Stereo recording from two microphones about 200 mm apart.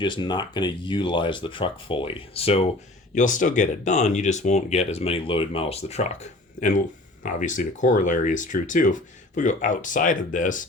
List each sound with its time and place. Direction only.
0.0 s speech: 25° left (ahead or behind)
3.2 s speech: 40° left (ahead or behind)